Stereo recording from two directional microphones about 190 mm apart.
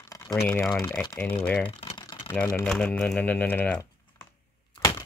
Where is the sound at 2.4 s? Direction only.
15° left (ahead or behind).